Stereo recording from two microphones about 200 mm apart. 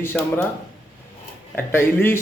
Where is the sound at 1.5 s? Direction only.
10° left (ahead or behind).